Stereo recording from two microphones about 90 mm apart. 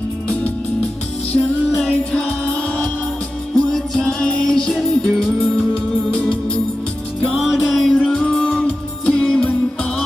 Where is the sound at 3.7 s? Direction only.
5° left (ahead or behind).